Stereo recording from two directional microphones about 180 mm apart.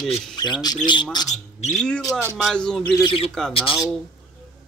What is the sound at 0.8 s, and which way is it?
Speech, 25° left (ahead or behind).